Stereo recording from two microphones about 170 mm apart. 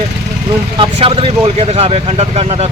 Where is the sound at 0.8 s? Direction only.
35° right (ahead or behind).